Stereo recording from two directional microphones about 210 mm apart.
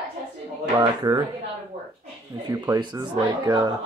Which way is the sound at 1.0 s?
20° right (ahead or behind).